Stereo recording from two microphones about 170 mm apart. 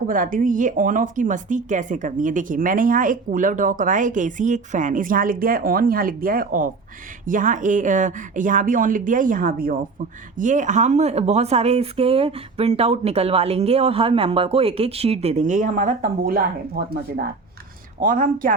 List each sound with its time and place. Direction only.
0.1 s speech: 55° right (ahead or behind)
10.3 s speech: 45° right (ahead or behind); by 16.9 s 65° right (ahead or behind)
18.0 s speech: 55° right (ahead or behind)